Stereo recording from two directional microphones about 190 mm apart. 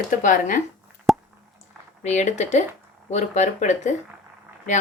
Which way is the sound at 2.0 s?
35° left (ahead or behind).